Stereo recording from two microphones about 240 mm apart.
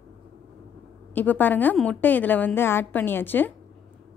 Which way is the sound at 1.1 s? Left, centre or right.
Centre.